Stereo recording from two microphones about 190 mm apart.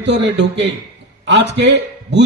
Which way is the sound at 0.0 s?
65° right (ahead or behind).